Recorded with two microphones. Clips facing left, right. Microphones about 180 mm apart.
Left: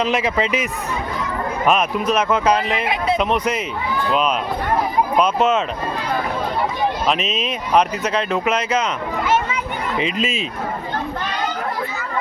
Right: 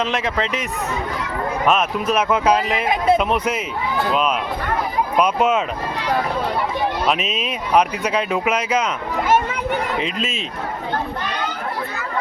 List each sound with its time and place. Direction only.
0.0 s speech: centre (ahead or behind)
2.8 s speech: 45° right (ahead or behind)
3.2 s speech: 5° right (ahead or behind)
5.1 s speech: 10° right (ahead or behind)
7.1 s speech: 5° right (ahead or behind)
9.2 s children playing: 50° right (ahead or behind)
10.0 s speech: centre (ahead or behind)